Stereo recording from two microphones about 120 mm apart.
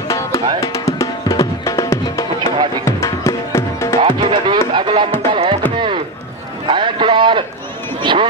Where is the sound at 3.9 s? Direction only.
45° right (ahead or behind).